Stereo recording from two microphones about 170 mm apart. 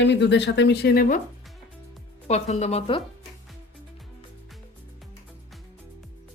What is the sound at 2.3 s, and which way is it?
Speech, 40° left (ahead or behind).